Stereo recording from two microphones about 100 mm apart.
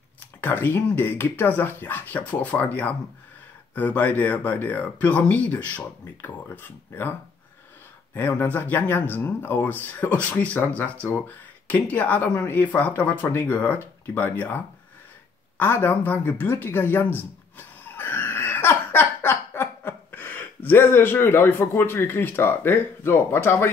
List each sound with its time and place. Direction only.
0.4 s speech: 20° left (ahead or behind)